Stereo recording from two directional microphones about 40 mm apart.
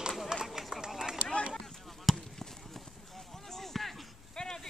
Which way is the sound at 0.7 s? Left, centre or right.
Centre.